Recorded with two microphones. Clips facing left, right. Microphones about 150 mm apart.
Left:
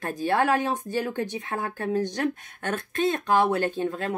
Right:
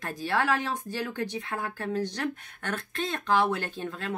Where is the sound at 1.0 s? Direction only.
20° left (ahead or behind).